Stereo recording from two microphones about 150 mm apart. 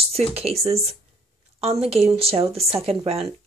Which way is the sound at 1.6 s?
40° right (ahead or behind).